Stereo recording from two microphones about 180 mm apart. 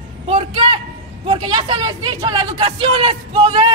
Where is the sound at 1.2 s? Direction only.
30° right (ahead or behind).